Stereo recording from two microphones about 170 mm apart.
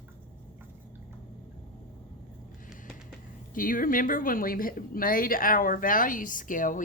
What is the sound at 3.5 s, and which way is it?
Speech, 55° left (ahead or behind).